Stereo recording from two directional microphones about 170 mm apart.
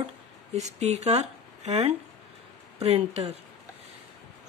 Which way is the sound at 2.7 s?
35° right (ahead or behind).